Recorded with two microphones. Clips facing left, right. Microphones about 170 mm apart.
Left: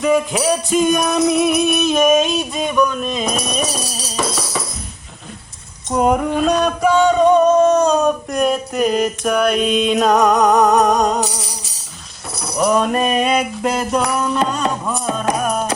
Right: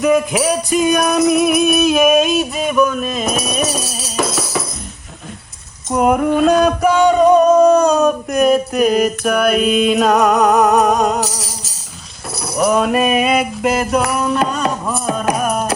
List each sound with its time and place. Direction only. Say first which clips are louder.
0.0 s music: right 2 dB; centre (ahead or behind)
5.9 s music: right 2 dB; 5° right (ahead or behind)
12.4 s a sound: right 1 dB; 5° right (ahead or behind)